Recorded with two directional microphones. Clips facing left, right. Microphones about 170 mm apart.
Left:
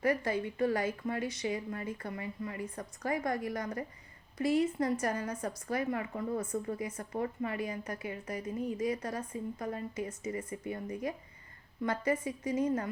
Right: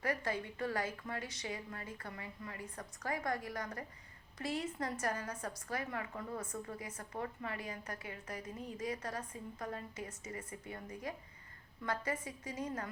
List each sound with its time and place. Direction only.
0.0 s speech: 15° left (ahead or behind)
6.1 s a woman's voice: 30° left (ahead or behind)
6.9 s speech: 20° left (ahead or behind)